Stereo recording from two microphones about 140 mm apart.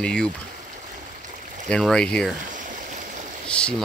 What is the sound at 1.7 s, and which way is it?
Speech, 5° left (ahead or behind).